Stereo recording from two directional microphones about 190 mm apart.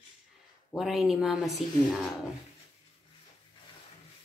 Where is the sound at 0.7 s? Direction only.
Centre (ahead or behind).